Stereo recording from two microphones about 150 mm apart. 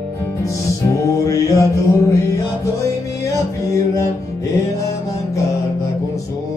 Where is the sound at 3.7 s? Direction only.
20° left (ahead or behind).